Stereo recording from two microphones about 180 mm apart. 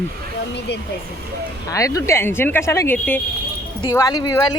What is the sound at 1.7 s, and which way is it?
Speech, 20° left (ahead or behind).